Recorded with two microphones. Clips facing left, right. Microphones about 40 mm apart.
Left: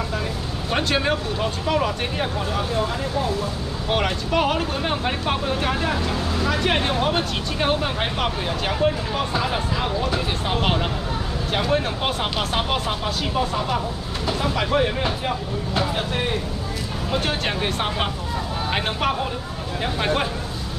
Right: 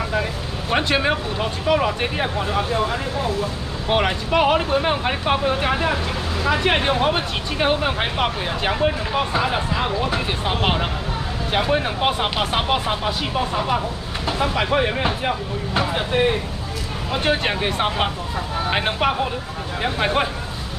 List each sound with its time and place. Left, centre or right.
0.7 s speech: centre